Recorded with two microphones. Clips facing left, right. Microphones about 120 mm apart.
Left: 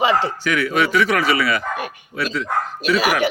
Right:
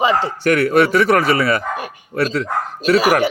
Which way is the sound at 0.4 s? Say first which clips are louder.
Right 6 dB; 60° right (ahead or behind).